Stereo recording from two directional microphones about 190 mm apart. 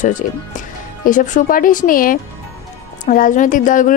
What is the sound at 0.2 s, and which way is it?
A woman's voice, 45° left (ahead or behind).